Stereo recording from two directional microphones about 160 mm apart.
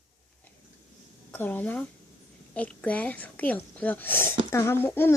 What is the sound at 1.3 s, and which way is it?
Speech, 10° left (ahead or behind).